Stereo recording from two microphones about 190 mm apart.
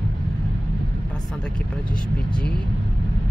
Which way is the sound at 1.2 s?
5° left (ahead or behind).